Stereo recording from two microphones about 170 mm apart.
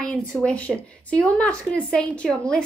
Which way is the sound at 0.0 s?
5° left (ahead or behind).